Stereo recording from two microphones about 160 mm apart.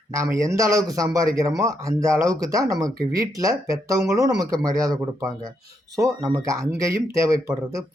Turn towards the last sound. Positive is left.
turn(degrees=-20)  # may be behind; listen again after turning